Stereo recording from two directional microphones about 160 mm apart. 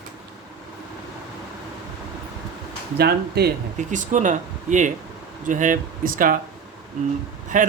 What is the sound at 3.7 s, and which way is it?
Speech, 50° right (ahead or behind).